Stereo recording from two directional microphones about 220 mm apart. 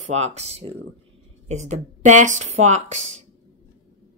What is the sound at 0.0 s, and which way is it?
Speech, 30° right (ahead or behind).